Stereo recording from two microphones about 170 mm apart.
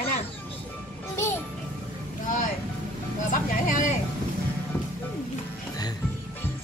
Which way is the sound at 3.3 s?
50° left (ahead or behind).